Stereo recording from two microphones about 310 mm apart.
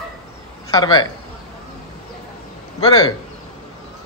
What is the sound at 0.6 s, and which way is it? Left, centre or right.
Speech, centre.